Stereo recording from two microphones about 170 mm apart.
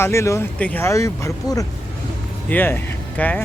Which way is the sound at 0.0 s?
15° left (ahead or behind).